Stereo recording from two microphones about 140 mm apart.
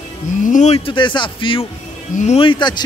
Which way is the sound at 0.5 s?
60° left (ahead or behind).